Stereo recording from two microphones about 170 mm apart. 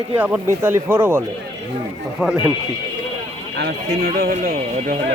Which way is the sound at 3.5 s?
75° right (ahead or behind).